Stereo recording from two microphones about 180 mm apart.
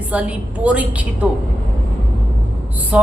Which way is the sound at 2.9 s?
5° right (ahead or behind).